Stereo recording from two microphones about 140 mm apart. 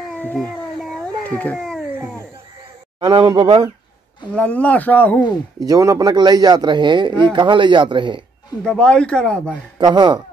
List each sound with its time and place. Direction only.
1.3 s speech: 10° left (ahead or behind)
3.0 s speech: 35° right (ahead or behind)
4.4 s speech: 10° left (ahead or behind)
5.6 s speech: 25° right (ahead or behind)
8.6 s speech: 5° left (ahead or behind)
9.8 s speech: 30° right (ahead or behind)